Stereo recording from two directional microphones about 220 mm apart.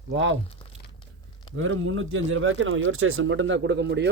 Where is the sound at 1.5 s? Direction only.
65° right (ahead or behind).